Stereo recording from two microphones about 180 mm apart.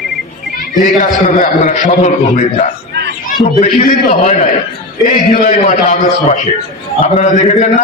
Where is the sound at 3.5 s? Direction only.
55° left (ahead or behind).